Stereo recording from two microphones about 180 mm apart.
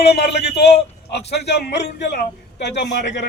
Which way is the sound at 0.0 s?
65° left (ahead or behind).